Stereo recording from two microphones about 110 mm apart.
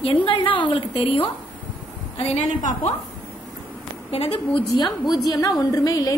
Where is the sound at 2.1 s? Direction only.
80° left.